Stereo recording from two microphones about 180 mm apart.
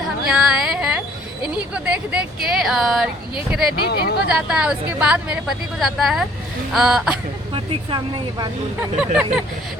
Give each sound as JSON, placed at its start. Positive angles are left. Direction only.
{"t": 0.3, "sound": "a sound", "side_deg": -5}
{"t": 1.7, "sound": "speech", "side_deg": -5}
{"t": 3.8, "sound": "speech", "side_deg": 60}
{"t": 4.3, "sound": "speech", "side_deg": -5}
{"t": 7.5, "sound": "speech", "side_deg": -25}